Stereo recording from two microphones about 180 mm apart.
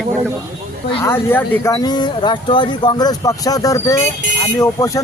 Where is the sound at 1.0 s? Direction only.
10° left (ahead or behind).